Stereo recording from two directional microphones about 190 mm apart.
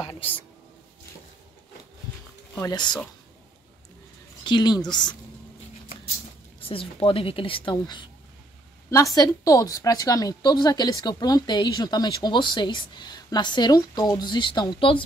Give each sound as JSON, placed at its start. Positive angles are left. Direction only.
{"t": 0.0, "sound": "speech", "side_deg": 30}
{"t": 2.5, "sound": "a woman's voice", "side_deg": 20}
{"t": 4.5, "sound": "a woman's voice", "side_deg": 20}
{"t": 6.6, "sound": "a woman's voice", "side_deg": 30}